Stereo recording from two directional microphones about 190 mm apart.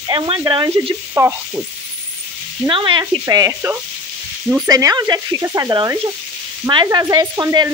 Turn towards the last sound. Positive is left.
turn(degrees=-20)  # may be behind; listen again after turning